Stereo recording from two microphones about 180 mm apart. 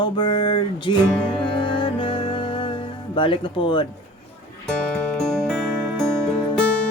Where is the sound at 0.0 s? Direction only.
25° left (ahead or behind).